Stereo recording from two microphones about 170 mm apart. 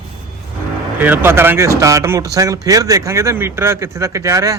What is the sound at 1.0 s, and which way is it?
Speech, 10° right (ahead or behind).